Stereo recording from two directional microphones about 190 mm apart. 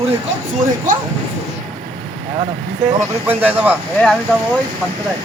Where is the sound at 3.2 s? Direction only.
10° right (ahead or behind).